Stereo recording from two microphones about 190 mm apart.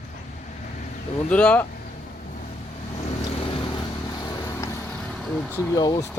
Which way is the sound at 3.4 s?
25° left (ahead or behind).